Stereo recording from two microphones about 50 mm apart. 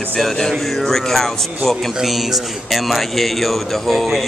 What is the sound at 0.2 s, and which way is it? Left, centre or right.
Speech, centre.